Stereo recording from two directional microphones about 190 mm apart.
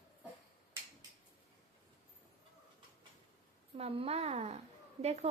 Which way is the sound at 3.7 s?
30° right (ahead or behind).